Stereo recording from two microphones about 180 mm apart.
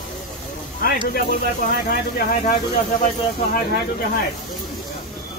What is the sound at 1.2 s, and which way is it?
Speech, 55° left (ahead or behind).